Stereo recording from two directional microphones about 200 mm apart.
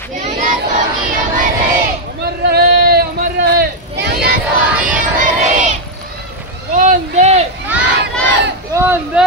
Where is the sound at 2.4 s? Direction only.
50° right (ahead or behind).